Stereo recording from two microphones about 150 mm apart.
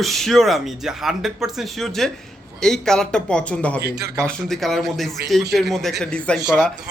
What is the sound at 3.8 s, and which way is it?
Speech, 90° right.